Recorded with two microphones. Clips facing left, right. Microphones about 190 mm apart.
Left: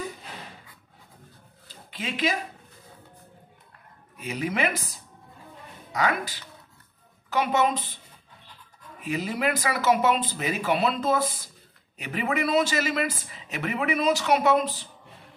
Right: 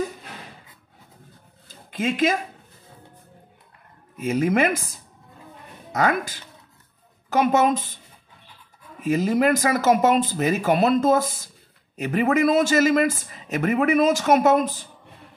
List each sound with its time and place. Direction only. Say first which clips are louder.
1.7 s a sound: right 9 dB; 45° right (ahead or behind)
4.2 s speech: right 7 dB; 45° right (ahead or behind)
5.9 s speech: right 4 dB; 45° right (ahead or behind)
9.0 s speech: right 8 dB; 45° right (ahead or behind)